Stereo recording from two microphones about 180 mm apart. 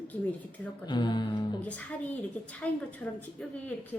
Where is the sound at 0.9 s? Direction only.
25° left (ahead or behind).